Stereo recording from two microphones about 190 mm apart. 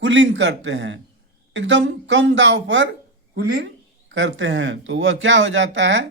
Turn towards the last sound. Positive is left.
turn(degrees=-75)  # may be behind; listen again after turning